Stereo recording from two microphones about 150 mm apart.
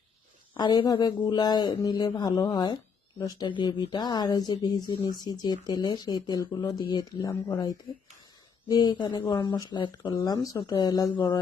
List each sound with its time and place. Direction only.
0.5 s speech: 30° left (ahead or behind)